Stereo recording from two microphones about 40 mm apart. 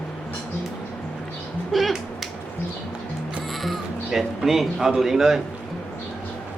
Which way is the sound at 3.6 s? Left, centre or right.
Centre.